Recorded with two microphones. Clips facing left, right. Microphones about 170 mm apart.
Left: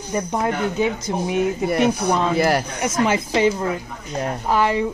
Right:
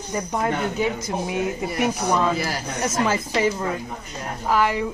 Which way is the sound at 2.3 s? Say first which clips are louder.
Left 9 dB; 65° left (ahead or behind).